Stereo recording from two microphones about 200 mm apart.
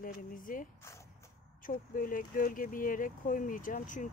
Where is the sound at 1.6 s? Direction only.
45° left (ahead or behind).